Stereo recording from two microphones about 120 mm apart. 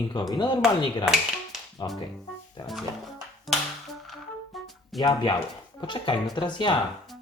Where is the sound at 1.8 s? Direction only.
40° left (ahead or behind).